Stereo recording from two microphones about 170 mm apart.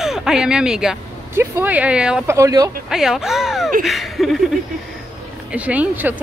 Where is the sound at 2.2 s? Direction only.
20° right (ahead or behind).